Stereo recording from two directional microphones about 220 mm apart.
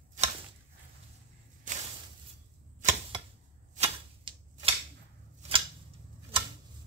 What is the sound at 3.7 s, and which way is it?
Typewriter, 30° right (ahead or behind).